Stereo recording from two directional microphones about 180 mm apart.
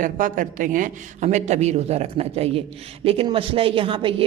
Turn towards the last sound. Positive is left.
turn(degrees=-30)  # may be behind; listen again after turning